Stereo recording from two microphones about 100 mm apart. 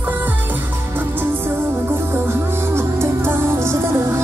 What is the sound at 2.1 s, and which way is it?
Music, 25° right (ahead or behind).